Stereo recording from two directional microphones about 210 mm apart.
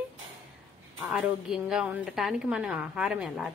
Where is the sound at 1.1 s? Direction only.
5° right (ahead or behind).